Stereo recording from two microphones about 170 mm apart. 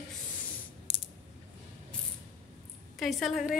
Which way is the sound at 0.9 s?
35° left (ahead or behind).